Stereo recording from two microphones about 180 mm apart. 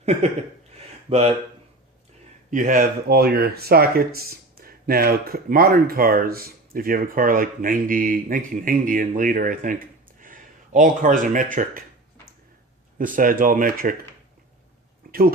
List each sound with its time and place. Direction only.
1.1 s speech: 30° right (ahead or behind)
2.5 s speech: 45° right (ahead or behind)
13.0 s speech: 50° right (ahead or behind)